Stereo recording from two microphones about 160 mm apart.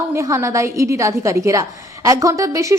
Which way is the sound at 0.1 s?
15° right (ahead or behind).